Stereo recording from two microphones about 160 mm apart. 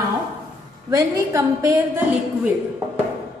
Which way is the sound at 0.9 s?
20° right (ahead or behind).